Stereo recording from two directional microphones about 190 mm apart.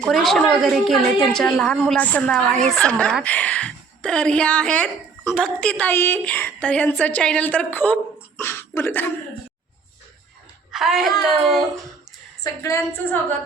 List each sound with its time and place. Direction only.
0.0 s a woman's voice: centre (ahead or behind)
8.4 s a sound: 10° left (ahead or behind)
10.7 s a woman's voice: centre (ahead or behind)
12.4 s a woman's voice: 15° left (ahead or behind)